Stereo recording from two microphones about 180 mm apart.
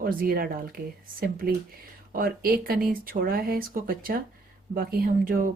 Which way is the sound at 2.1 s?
55° right (ahead or behind).